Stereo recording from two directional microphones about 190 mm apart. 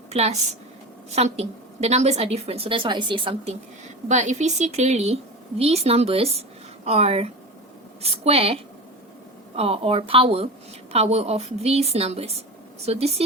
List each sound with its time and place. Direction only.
0.1 s a woman's voice: 35° right (ahead or behind)
4.1 s a woman's voice: 40° right (ahead or behind)
9.6 s a woman's voice: 30° right (ahead or behind)